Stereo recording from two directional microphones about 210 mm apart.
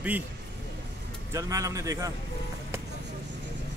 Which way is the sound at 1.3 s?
15° right (ahead or behind).